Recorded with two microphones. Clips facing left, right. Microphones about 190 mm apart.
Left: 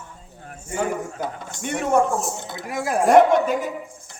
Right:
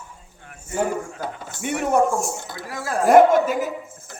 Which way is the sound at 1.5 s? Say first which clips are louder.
Even; 10° right (ahead or behind).